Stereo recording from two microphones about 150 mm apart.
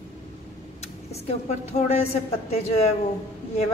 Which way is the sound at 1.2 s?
45° left (ahead or behind).